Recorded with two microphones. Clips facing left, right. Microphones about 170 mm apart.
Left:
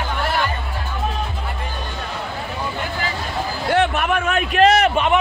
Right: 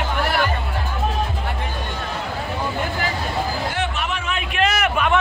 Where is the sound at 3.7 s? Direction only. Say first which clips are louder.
Left 7 dB; 60° left (ahead or behind); by 5.1 s 35° left (ahead or behind).